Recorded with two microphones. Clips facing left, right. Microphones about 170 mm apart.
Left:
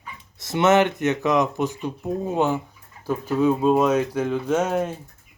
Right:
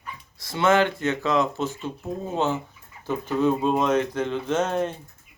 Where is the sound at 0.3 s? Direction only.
20° left (ahead or behind).